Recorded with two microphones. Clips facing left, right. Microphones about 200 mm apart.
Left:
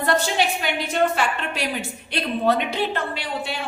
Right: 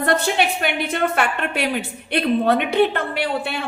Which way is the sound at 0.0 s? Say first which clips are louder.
Right 2 dB; 60° right (ahead or behind).